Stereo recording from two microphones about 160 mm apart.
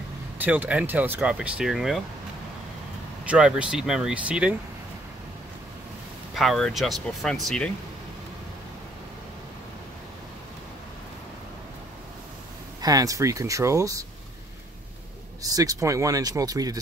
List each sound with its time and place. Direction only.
0.4 s speech: 10° right (ahead or behind)
3.3 s speech: 5° right (ahead or behind)
6.3 s speech: centre (ahead or behind)
12.8 s speech: 20° right (ahead or behind)
15.4 s speech: 20° right (ahead or behind)